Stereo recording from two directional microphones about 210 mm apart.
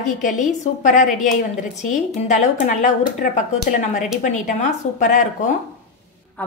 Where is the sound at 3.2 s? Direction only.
35° left (ahead or behind).